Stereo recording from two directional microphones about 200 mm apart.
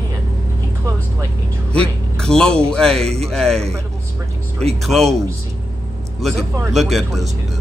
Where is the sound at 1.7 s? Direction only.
5° left (ahead or behind).